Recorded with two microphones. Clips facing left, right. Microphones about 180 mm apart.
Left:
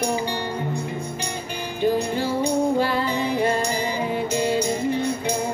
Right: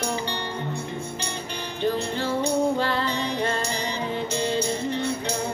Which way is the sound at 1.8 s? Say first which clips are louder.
Left 4 dB; 10° left (ahead or behind).